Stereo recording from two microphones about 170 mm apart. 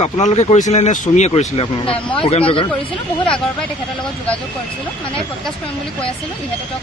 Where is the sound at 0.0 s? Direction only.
45° left (ahead or behind).